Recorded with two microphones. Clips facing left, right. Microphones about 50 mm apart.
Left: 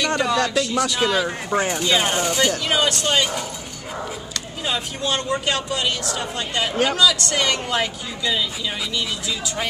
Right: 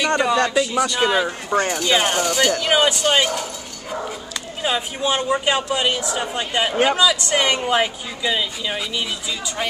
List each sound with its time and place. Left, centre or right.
0.1 s speech: centre
1.5 s speech: centre
1.9 s speech: centre
4.6 s speech: centre